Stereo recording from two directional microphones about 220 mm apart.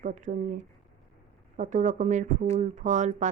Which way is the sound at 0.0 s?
35° right (ahead or behind).